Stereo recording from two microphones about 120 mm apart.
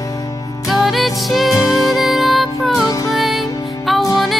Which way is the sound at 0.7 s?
Centre (ahead or behind).